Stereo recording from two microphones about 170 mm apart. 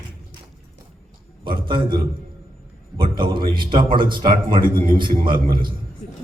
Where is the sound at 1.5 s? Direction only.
30° right (ahead or behind).